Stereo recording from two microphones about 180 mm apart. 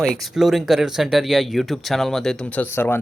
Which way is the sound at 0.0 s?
Centre (ahead or behind).